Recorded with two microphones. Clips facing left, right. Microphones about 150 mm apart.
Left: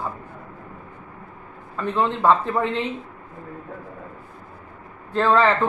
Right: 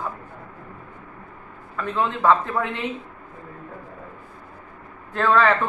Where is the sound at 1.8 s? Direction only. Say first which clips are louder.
Left 2 dB; 15° left (ahead or behind).